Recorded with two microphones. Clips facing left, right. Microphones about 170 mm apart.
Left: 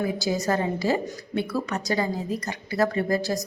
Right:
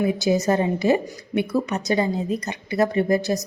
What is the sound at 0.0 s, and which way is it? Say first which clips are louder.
A woman's voice: right 5 dB; 20° right (ahead or behind).